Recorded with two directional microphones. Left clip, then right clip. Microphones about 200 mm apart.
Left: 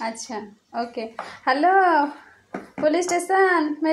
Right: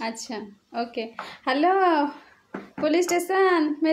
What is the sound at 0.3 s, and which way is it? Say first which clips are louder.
A woman's voice: left 2 dB; 15° right (ahead or behind).